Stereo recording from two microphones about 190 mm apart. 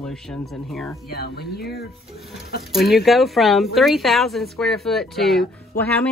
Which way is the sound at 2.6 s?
Centre (ahead or behind).